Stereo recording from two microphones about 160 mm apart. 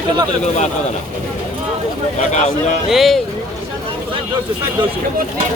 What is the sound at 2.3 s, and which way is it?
Speech, 50° left (ahead or behind).